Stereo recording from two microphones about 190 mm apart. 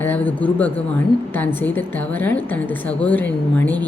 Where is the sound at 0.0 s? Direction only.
10° left (ahead or behind).